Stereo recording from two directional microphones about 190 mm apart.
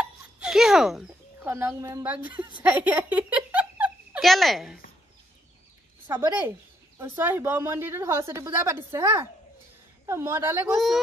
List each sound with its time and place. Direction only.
0.0 s a sound: 5° right (ahead or behind)
1.5 s speech: 15° right (ahead or behind)
2.3 s a woman's voice: 25° right (ahead or behind)
2.6 s a child's voice: 10° right (ahead or behind)
7.0 s speech: 10° right (ahead or behind)